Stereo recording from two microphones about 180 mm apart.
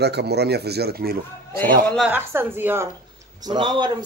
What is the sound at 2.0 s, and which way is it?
Speech, 10° right (ahead or behind).